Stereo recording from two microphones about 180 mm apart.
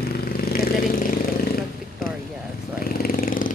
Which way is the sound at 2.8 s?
55° left (ahead or behind).